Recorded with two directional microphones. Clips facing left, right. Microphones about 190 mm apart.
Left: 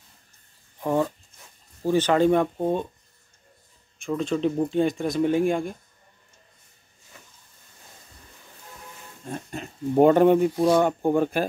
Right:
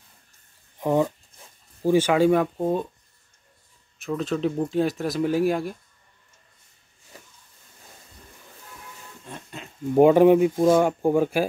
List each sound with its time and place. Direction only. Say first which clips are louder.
0.7 s speech: right 2 dB; 15° right (ahead or behind)
4.0 s speech: left 1 dB; centre (ahead or behind)
9.9 s speech: right 2 dB; 5° right (ahead or behind)